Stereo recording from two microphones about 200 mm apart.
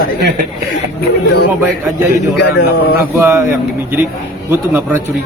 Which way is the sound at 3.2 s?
10° right (ahead or behind).